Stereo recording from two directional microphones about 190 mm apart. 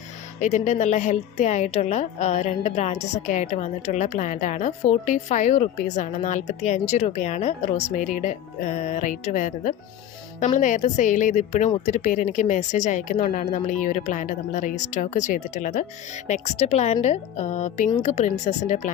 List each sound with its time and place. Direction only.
0.3 s a woman's voice: 40° left (ahead or behind)